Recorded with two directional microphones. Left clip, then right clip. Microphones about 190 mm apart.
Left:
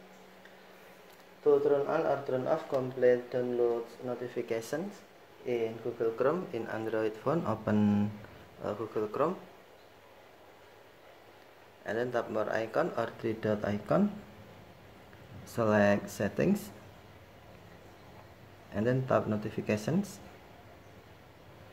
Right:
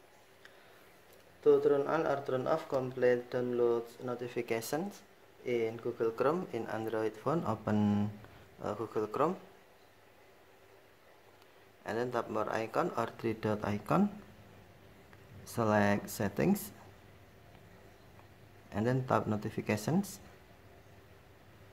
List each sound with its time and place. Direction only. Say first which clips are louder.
1.4 s speech: left 1 dB; 35° right (ahead or behind); by 9.3 s 20° right (ahead or behind)
11.8 s speech: left 2 dB; 20° right (ahead or behind)
15.4 s speech: left 3 dB; 20° right (ahead or behind)
18.7 s speech: left 3 dB; 20° right (ahead or behind)